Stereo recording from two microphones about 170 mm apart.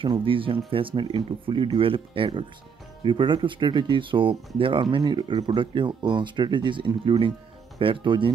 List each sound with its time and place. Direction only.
0.0 s speech: 30° right (ahead or behind)